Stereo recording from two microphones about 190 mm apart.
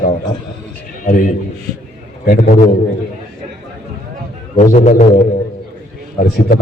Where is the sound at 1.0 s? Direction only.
45° left (ahead or behind).